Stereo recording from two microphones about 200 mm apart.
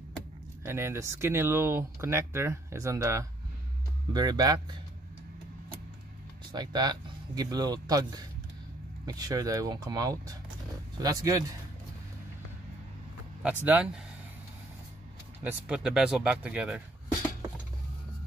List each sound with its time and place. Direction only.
0.7 s speech: 15° right (ahead or behind)
6.5 s speech: 20° right (ahead or behind)
13.4 s speech: 10° right (ahead or behind)
15.4 s speech: 5° right (ahead or behind)